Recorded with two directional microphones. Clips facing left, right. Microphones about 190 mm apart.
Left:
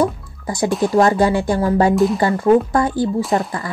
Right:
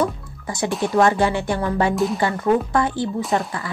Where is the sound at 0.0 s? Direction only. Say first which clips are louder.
Left 4 dB; 35° left (ahead or behind).